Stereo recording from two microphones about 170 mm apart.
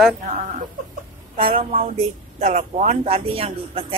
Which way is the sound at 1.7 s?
35° right (ahead or behind).